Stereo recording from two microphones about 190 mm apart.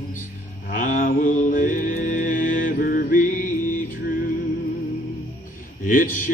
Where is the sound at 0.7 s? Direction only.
45° left (ahead or behind).